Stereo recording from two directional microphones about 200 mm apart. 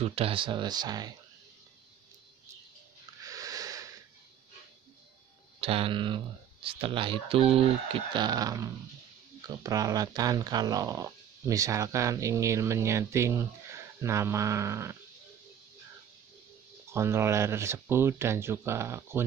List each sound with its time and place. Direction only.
0.0 s speech: 30° right (ahead or behind)
3.3 s wheeze: 15° right (ahead or behind)
5.6 s speech: 25° right (ahead or behind)
16.9 s speech: 15° right (ahead or behind)